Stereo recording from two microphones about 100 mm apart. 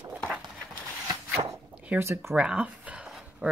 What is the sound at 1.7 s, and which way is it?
Zipper, 15° right (ahead or behind).